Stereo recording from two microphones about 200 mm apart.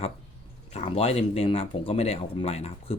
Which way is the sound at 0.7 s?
30° left (ahead or behind).